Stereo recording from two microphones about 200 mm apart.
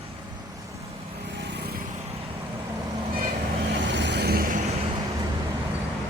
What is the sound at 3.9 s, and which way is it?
Vehicle, 60° right (ahead or behind).